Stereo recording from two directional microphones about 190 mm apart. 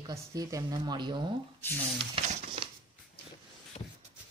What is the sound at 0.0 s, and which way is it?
Speech, 20° right (ahead or behind).